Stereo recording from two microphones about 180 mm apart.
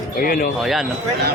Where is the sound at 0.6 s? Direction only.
Centre (ahead or behind).